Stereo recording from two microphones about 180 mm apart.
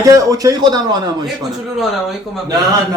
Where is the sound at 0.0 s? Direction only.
20° right (ahead or behind).